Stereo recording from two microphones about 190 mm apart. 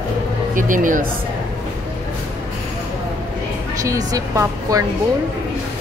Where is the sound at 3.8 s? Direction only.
15° right (ahead or behind).